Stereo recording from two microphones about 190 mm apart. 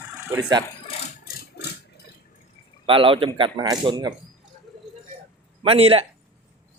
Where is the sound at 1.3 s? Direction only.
55° left (ahead or behind).